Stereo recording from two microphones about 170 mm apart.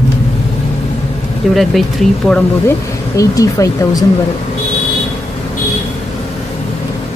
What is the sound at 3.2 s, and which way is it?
Speech, 20° left (ahead or behind).